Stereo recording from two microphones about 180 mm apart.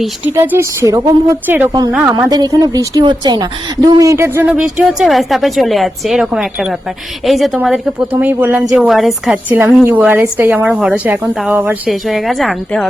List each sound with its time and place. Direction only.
0.3 s speech: 10° right (ahead or behind)
2.1 s a woman's voice: 20° right (ahead or behind); by 12.9 s 5° left (ahead or behind)